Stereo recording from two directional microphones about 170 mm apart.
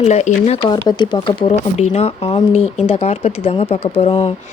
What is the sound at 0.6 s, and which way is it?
Speech, 25° left (ahead or behind).